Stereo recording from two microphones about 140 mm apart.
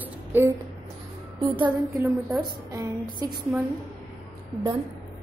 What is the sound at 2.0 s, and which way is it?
A woman's voice, 20° right (ahead or behind).